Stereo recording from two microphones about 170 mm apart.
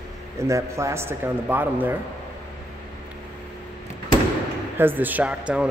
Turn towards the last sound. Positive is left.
turn(degrees=-5)  # may be behind; listen again after turning